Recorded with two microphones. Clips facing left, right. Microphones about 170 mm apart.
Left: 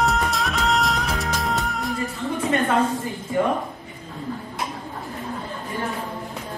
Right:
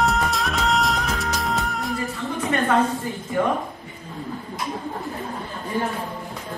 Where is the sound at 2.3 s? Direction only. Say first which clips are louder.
Left 1 dB; 25° left (ahead or behind).